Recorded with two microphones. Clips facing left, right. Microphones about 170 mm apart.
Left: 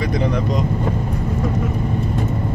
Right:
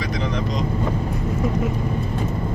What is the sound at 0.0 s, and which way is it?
Speech, 55° left (ahead or behind).